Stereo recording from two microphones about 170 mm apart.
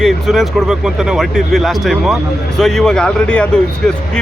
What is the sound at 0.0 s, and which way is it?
Speech, centre (ahead or behind).